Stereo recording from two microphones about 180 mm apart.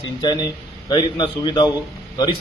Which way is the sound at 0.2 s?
25° left (ahead or behind).